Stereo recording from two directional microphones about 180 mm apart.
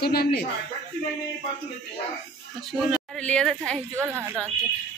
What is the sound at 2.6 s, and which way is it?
Speech, centre (ahead or behind).